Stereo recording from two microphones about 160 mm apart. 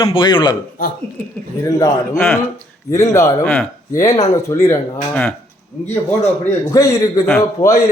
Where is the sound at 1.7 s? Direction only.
20° left (ahead or behind).